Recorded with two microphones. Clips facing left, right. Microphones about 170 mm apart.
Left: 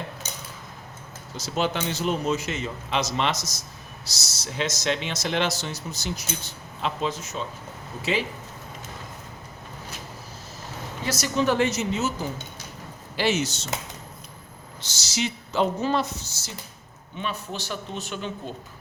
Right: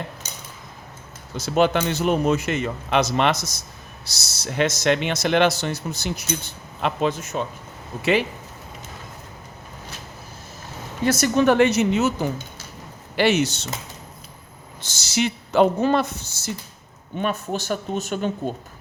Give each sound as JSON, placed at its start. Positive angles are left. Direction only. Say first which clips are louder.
{"t": 1.4, "sound": "speech", "louder": "right 7 dB", "side_deg": -60}
{"t": 11.0, "sound": "speech", "louder": "right 6 dB", "side_deg": -55}
{"t": 13.1, "sound": "speech", "louder": "right 5 dB", "side_deg": -60}
{"t": 14.8, "sound": "speech", "louder": "right 6 dB", "side_deg": -55}